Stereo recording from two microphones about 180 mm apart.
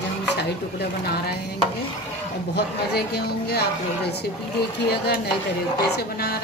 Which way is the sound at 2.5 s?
65° left (ahead or behind).